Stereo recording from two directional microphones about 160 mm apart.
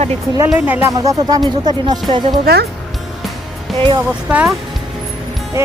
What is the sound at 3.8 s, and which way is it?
Speech, 30° right (ahead or behind).